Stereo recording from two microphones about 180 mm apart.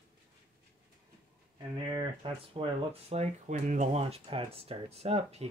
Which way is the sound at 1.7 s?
25° right (ahead or behind).